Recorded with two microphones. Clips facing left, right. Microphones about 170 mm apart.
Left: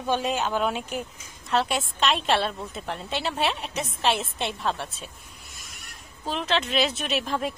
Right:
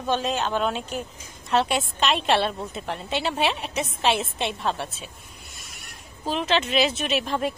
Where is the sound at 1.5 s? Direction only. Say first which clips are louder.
Right 2 dB; centre (ahead or behind).